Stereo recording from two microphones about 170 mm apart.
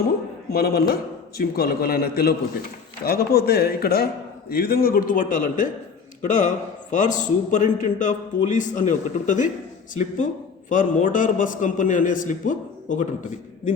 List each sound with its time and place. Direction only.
0.5 s a man's voice: 65° left (ahead or behind); by 13.1 s 45° left (ahead or behind)